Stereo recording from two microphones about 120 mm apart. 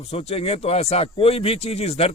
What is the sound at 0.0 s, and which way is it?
Speech, 60° left (ahead or behind).